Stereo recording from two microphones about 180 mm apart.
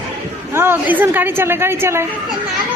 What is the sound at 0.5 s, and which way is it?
A woman's voice, 10° right (ahead or behind).